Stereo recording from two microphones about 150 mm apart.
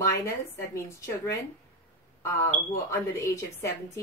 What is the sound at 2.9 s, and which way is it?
Speech, 20° left (ahead or behind).